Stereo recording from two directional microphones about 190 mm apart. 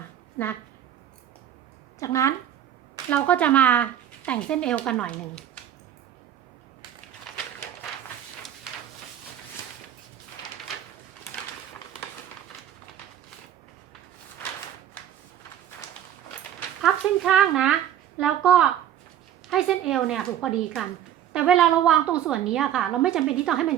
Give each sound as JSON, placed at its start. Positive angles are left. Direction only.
{"t": 2.0, "sound": "a woman's voice", "side_deg": 15}
{"t": 16.8, "sound": "a woman's voice", "side_deg": 0}